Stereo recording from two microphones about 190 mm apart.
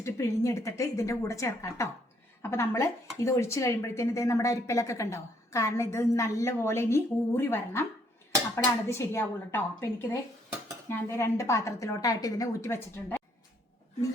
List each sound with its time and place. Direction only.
0.0 s a woman's voice: 15° left (ahead or behind)